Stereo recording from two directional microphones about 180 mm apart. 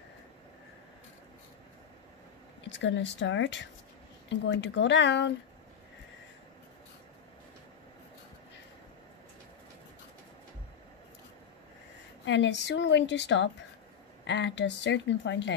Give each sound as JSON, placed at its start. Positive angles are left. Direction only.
{"t": 2.6, "sound": "speech", "side_deg": 90}
{"t": 12.3, "sound": "speech", "side_deg": 80}